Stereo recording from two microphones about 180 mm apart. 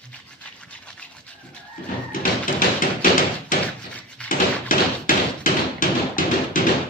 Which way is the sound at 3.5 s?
45° left (ahead or behind).